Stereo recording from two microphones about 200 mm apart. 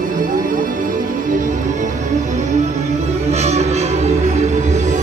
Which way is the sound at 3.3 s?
35° right (ahead or behind).